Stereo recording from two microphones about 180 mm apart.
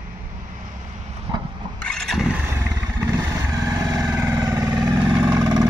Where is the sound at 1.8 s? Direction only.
5° left (ahead or behind).